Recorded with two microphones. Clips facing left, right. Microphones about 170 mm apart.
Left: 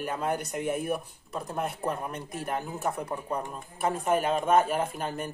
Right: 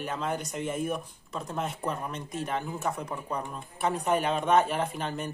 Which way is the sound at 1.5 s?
10° left (ahead or behind).